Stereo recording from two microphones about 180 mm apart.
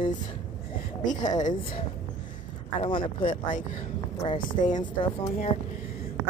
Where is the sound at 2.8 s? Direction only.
30° left (ahead or behind).